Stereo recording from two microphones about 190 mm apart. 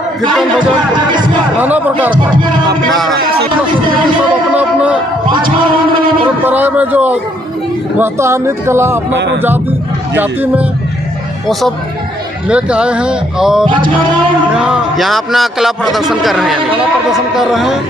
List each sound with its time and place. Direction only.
0.9 s speech: 25° right (ahead or behind)
1.6 s speech: 10° right (ahead or behind)
6.4 s speech: 10° right (ahead or behind)
9.1 s speech: 65° right (ahead or behind)
10.1 s speech: 10° right (ahead or behind)
12.4 s a man's voice: 5° right (ahead or behind)
13.7 s speech: 25° right (ahead or behind)
14.5 s a man's voice: 5° right (ahead or behind)